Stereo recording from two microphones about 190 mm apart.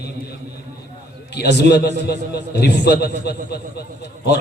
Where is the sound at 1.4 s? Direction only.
60° left (ahead or behind).